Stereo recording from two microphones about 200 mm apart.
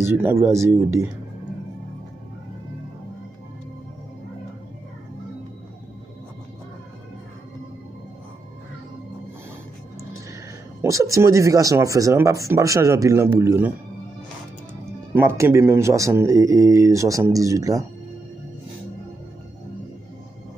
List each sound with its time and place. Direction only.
0.0 s speech: 10° right (ahead or behind)
10.8 s speech: 15° right (ahead or behind)
15.1 s speech: 10° right (ahead or behind)